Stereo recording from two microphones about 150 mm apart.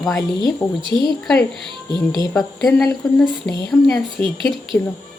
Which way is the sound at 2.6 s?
Centre (ahead or behind).